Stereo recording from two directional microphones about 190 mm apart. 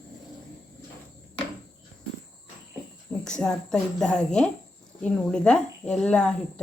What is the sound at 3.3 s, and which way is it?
Speech, 5° left (ahead or behind).